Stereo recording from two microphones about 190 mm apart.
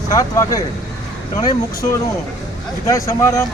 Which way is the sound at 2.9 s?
15° left (ahead or behind).